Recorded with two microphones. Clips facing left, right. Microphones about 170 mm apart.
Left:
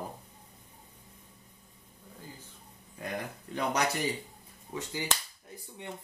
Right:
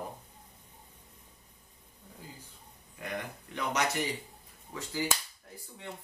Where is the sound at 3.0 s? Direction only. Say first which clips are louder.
Left 1 dB; 35° left (ahead or behind).